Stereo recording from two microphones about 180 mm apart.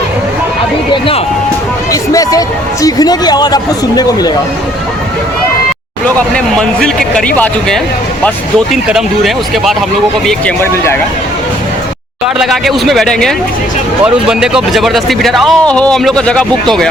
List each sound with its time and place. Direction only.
1.9 s a sound: 20° left (ahead or behind)
2.8 s speech: 20° left (ahead or behind)
6.1 s speech: 5° left (ahead or behind)
10.2 s speech: 10° left (ahead or behind)
12.4 s speech: centre (ahead or behind)